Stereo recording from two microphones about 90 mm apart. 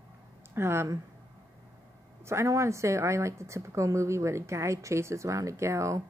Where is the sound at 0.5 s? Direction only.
30° right (ahead or behind).